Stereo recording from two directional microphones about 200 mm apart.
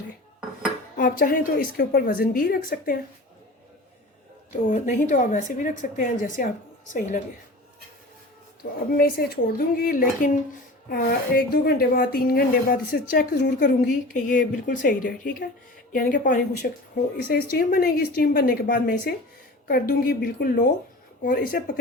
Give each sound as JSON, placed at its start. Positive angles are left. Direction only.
{"t": 0.9, "sound": "speech", "side_deg": 45}
{"t": 4.5, "sound": "a woman's voice", "side_deg": 35}
{"t": 8.6, "sound": "a woman's voice", "side_deg": 60}
{"t": 9.0, "sound": "speech", "side_deg": 50}